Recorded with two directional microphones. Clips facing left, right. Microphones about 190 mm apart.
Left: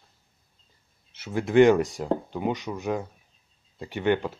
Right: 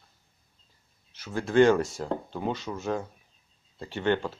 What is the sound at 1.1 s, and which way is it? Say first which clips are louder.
Speech: left 3 dB; 20° left (ahead or behind).